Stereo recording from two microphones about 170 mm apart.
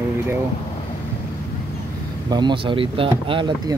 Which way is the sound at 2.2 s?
25° right (ahead or behind).